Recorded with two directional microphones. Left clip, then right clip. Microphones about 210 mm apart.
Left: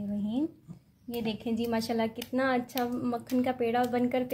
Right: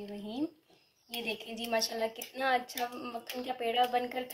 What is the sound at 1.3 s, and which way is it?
A woman's voice, 45° left (ahead or behind).